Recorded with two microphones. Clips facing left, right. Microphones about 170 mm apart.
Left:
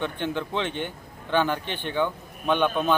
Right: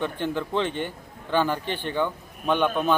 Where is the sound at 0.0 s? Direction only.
5° right (ahead or behind).